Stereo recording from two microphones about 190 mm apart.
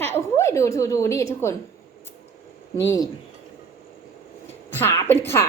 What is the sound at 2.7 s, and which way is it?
Speech, 15° left (ahead or behind).